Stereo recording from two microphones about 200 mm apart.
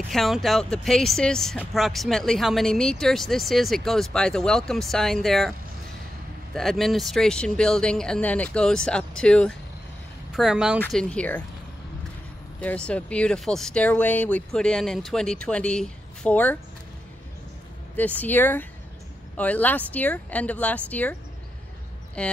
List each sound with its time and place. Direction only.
0.1 s speech: centre (ahead or behind)
6.5 s speech: centre (ahead or behind)
12.5 s speech: 5° left (ahead or behind)
17.9 s speech: 10° left (ahead or behind)